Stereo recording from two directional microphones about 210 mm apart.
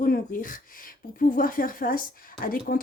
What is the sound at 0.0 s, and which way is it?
Speech, 40° left (ahead or behind).